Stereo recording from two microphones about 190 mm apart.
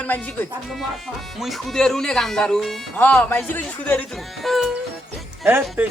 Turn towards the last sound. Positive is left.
turn(degrees=-10)  # may be behind; listen again after turning